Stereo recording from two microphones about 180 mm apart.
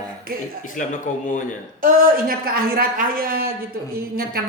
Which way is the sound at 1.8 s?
55° right (ahead or behind).